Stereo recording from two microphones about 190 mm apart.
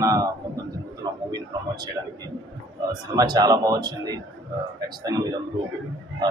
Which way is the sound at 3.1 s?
20° right (ahead or behind).